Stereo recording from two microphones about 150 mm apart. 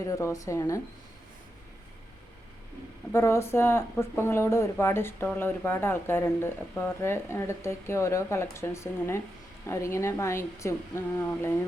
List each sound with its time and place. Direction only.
0.0 s a woman's voice: 20° left (ahead or behind)
3.1 s a woman's voice: 15° left (ahead or behind)